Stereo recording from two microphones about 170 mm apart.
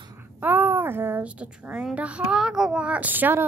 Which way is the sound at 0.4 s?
10° right (ahead or behind).